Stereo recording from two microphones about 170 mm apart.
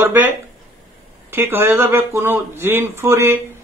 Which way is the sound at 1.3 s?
15° right (ahead or behind).